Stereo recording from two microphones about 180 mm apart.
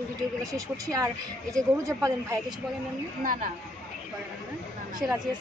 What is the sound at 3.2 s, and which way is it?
Speech, 50° right (ahead or behind).